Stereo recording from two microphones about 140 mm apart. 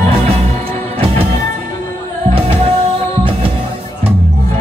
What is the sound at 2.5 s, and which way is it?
Music, 45° right (ahead or behind).